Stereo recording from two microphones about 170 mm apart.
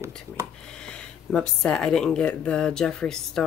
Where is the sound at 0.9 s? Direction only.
5° left (ahead or behind).